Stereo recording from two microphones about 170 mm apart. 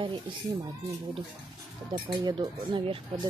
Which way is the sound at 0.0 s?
30° right (ahead or behind).